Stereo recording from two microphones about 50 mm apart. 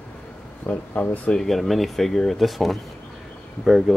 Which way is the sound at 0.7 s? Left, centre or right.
Left.